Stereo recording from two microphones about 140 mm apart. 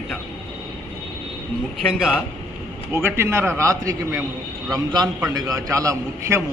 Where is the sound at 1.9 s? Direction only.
5° right (ahead or behind).